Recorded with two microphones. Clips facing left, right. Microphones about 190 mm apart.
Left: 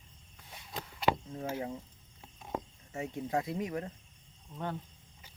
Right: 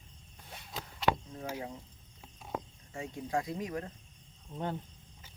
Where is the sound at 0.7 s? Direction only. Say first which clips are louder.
Even; centre (ahead or behind).